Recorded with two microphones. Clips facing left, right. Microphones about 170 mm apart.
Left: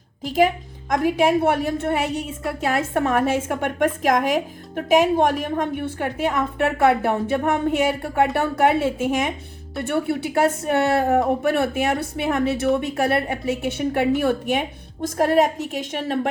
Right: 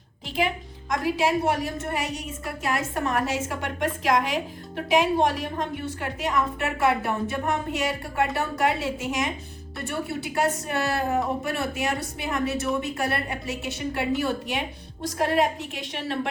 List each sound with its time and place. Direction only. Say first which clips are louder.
0.3 s a woman's voice: left 8 dB; 40° left (ahead or behind)
15.0 s a woman's voice: left 5 dB; 45° left (ahead or behind)